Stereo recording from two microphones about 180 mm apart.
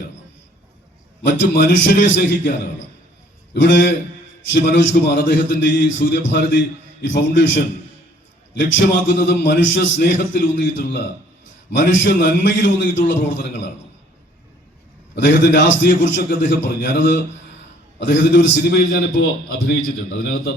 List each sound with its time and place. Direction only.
1.4 s a man's voice: 90° left
3.5 s a man's voice: 90° left
9.2 s a man's voice: 90° left
15.1 s a man's voice: 85° left; by 20.5 s 60° left (ahead or behind)